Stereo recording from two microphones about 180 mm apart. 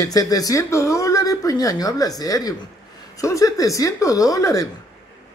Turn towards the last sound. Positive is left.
turn(degrees=20)  # may be behind; listen again after turning